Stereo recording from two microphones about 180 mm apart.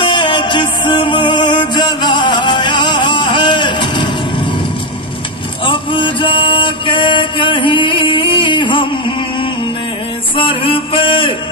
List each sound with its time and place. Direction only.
0.0 s music: 25° left (ahead or behind)
5.7 s music: 25° left (ahead or behind)
10.3 s music: 30° left (ahead or behind)